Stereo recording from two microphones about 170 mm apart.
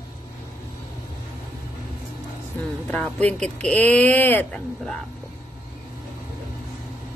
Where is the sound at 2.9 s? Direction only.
5° left (ahead or behind).